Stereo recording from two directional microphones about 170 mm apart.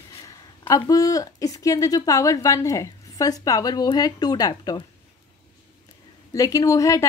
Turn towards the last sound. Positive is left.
turn(degrees=20)  # may be behind; listen again after turning